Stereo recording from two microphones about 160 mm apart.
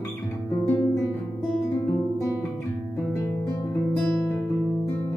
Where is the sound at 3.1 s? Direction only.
15° left (ahead or behind).